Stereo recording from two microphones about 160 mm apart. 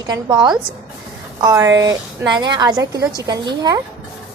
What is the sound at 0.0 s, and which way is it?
A woman's voice, 25° right (ahead or behind).